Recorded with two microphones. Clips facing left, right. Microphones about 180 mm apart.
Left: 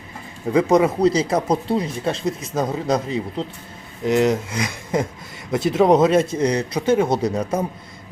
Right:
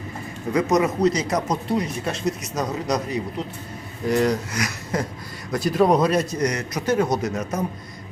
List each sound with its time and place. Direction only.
0.5 s speech: 30° left (ahead or behind)